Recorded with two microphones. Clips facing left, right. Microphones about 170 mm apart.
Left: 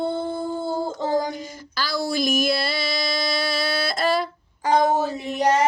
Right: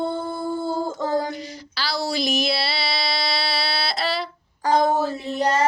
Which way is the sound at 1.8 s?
50° left (ahead or behind).